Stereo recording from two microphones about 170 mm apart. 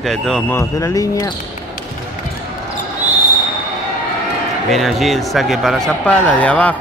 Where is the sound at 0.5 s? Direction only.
20° left (ahead or behind).